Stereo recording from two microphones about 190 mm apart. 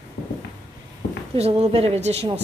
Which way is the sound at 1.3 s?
30° right (ahead or behind).